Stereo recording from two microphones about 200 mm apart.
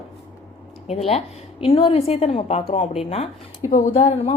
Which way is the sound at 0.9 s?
30° left (ahead or behind).